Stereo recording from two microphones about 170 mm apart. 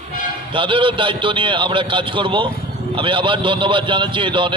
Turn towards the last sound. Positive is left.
turn(degrees=-30)  # may be behind; listen again after turning